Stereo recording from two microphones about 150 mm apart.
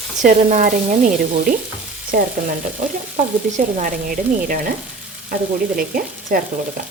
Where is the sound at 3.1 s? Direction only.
60° right (ahead or behind).